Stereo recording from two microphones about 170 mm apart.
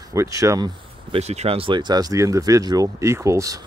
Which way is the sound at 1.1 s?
40° right (ahead or behind).